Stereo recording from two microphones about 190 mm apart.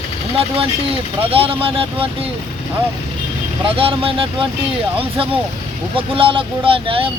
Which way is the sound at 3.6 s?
30° right (ahead or behind).